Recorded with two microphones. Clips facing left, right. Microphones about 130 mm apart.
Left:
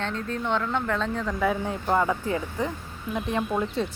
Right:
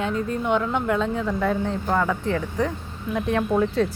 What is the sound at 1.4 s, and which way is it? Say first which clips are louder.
Speech: right 2 dB; 10° left (ahead or behind).